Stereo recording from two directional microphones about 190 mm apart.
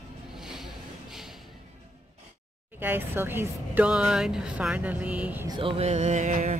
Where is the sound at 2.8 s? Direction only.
10° right (ahead or behind).